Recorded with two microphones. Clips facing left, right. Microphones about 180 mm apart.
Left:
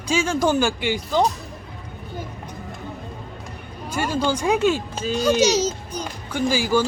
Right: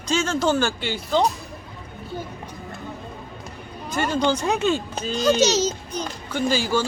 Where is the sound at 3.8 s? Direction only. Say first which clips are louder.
Right 1 dB; 10° left (ahead or behind).